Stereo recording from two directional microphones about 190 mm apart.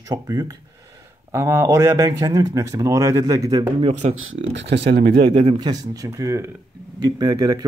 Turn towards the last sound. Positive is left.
turn(degrees=-20)  # may be behind; listen again after turning